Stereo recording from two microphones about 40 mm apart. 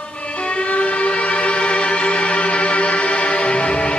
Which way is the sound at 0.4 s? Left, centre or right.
Left.